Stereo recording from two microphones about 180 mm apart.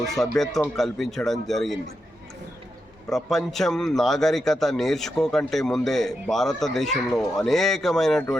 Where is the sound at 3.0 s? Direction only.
Centre (ahead or behind).